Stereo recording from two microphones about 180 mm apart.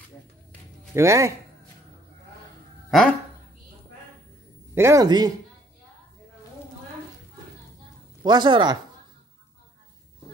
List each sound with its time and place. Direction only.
0.9 s speech: 15° right (ahead or behind)
2.9 s speech: centre (ahead or behind)
4.7 s speech: 15° right (ahead or behind)
8.2 s speech: 25° right (ahead or behind)